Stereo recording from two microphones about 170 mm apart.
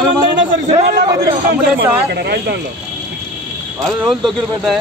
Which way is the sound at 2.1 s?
75° right (ahead or behind).